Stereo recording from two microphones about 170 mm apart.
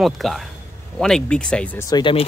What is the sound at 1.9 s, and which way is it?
Speech, 30° left (ahead or behind).